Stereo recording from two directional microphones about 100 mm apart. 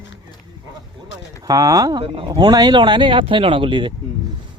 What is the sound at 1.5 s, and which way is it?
Speech, 35° right (ahead or behind).